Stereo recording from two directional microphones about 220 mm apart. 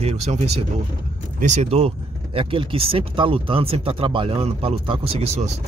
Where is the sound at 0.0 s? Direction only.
30° right (ahead or behind).